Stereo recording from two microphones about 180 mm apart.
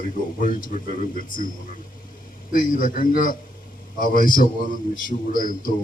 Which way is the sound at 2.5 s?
50° left (ahead or behind).